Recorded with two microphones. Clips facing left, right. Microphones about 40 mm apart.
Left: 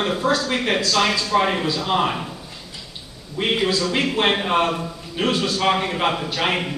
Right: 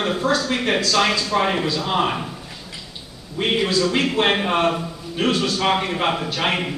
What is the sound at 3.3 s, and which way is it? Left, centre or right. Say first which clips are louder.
A man's voice: right 1 dB; centre.